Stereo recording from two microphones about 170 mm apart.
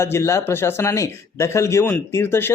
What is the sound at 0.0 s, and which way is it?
Speech, 15° left (ahead or behind).